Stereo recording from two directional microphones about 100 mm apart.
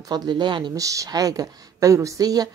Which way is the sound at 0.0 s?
45° right (ahead or behind).